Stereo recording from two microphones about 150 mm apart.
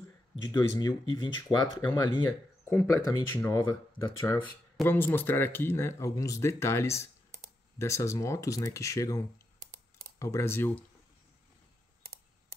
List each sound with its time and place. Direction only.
0.5 s speech: 25° left (ahead or behind)